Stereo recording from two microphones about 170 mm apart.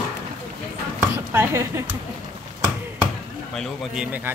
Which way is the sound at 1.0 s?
15° right (ahead or behind).